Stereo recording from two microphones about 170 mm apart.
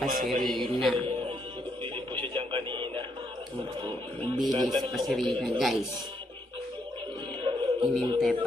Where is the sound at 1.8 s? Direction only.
30° right (ahead or behind).